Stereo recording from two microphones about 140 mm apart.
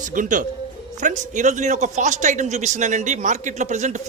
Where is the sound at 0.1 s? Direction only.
70° right (ahead or behind).